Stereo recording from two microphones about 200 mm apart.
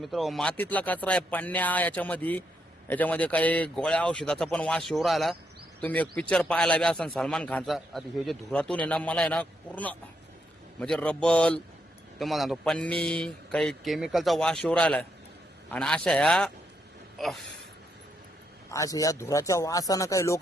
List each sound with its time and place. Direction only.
0.0 s speech: centre (ahead or behind)
17.2 s a sound: centre (ahead or behind)
18.7 s speech: 15° left (ahead or behind)